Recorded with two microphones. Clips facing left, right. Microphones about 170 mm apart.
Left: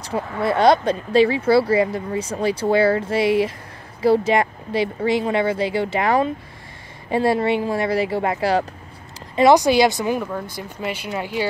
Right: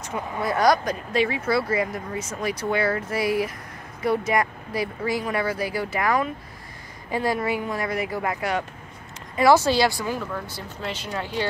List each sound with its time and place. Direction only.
0.4 s speech: 25° left (ahead or behind)
9.3 s speech: 20° left (ahead or behind)